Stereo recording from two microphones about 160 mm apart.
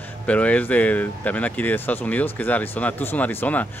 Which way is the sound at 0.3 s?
10° left (ahead or behind).